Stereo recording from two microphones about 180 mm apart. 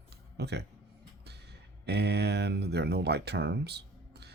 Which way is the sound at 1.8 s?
65° right (ahead or behind).